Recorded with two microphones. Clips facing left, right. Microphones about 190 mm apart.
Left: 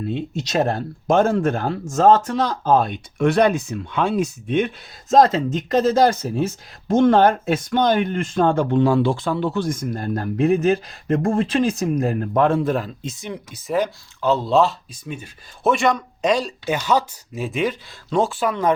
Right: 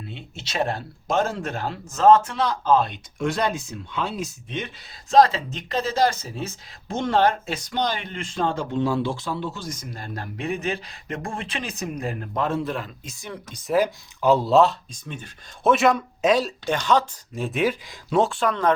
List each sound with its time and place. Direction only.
0.1 s speech: 45° left (ahead or behind)
13.0 s speech: 25° left (ahead or behind)
13.7 s speech: 5° right (ahead or behind)
15.7 s speech: 5° right (ahead or behind)
16.7 s speech: 10° left (ahead or behind)